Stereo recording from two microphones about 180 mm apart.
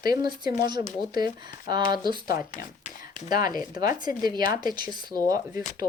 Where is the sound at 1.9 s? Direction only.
20° right (ahead or behind).